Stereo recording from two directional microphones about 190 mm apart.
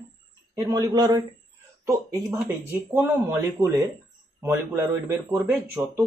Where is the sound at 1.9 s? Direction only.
10° right (ahead or behind).